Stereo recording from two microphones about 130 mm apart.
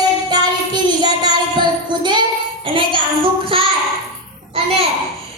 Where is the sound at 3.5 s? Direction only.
45° right (ahead or behind).